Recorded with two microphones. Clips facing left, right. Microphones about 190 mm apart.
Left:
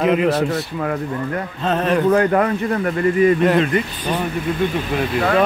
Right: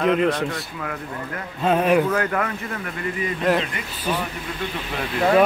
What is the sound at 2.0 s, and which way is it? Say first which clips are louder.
Speech: left 8 dB; 30° left (ahead or behind).